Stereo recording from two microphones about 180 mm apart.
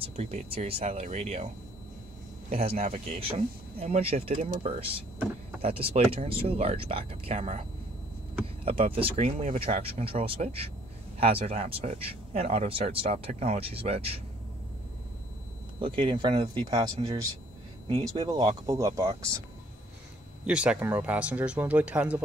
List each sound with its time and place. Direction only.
0.0 s speech: 35° right (ahead or behind)
2.5 s speech: 35° right (ahead or behind)
8.6 s speech: 30° right (ahead or behind)
9.1 s speech: 45° right (ahead or behind)
15.8 s speech: 25° right (ahead or behind)
20.4 s speech: 5° right (ahead or behind)